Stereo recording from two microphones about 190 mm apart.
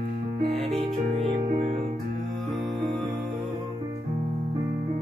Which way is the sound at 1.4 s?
35° right (ahead or behind).